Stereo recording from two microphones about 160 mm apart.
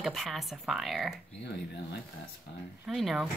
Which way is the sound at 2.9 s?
Centre (ahead or behind).